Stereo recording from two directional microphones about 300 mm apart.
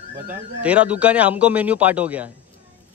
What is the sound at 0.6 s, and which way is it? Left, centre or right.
A man's voice, centre.